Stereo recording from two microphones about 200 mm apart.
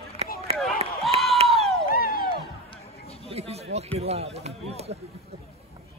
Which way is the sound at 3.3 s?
30° right (ahead or behind).